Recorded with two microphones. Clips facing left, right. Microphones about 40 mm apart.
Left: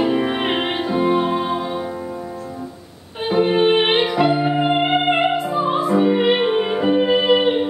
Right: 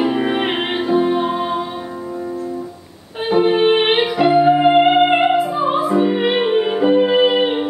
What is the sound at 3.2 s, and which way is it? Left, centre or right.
Music, centre.